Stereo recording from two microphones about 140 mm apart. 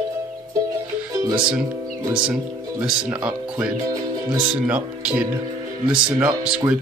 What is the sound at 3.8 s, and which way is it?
Music, 25° right (ahead or behind).